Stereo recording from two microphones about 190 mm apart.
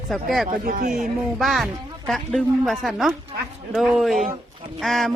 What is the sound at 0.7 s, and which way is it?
Speech, 45° right (ahead or behind).